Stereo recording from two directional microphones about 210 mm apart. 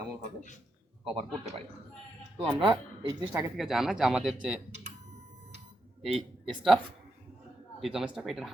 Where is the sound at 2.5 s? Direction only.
20° right (ahead or behind).